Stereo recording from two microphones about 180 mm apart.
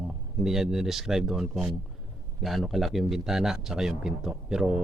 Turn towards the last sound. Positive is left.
turn(degrees=-5)  # may be behind; listen again after turning